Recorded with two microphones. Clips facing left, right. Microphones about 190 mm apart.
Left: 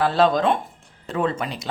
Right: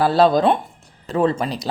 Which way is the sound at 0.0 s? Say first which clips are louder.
Right 3 dB; 35° right (ahead or behind).